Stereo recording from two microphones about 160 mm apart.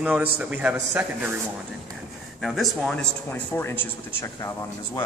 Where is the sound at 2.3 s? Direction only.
Centre (ahead or behind); by 4.5 s 15° left (ahead or behind).